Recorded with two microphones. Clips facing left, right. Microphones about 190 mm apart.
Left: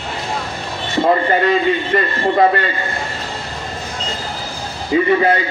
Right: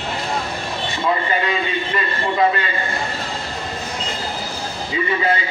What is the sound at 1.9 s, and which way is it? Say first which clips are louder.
Speech: left 6 dB; 50° left (ahead or behind).